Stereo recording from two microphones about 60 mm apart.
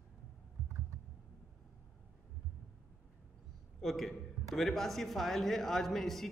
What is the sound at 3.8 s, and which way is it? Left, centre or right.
A man's voice, centre.